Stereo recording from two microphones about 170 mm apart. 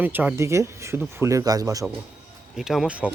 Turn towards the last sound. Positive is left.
turn(degrees=-5)  # may be behind; listen again after turning